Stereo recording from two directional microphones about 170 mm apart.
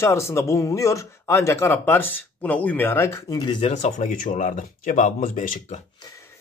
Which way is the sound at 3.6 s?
45° left (ahead or behind).